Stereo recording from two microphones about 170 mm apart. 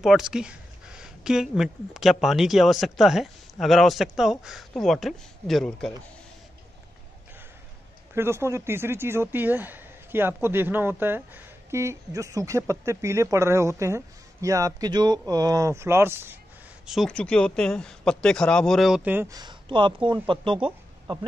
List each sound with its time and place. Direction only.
0.0 s speech: centre (ahead or behind)
8.1 s speech: 15° right (ahead or behind)
16.8 s speech: centre (ahead or behind)
19.3 s speech: 25° right (ahead or behind)